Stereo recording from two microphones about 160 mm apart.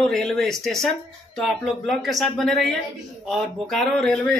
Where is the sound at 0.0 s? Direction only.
5° left (ahead or behind).